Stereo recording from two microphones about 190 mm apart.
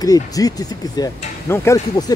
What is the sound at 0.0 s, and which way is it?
Speech, 20° left (ahead or behind).